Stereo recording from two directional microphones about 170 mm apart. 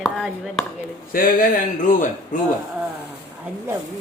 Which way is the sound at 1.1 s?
55° left (ahead or behind).